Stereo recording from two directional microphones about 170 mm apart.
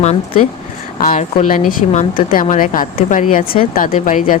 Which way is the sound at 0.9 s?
50° left (ahead or behind).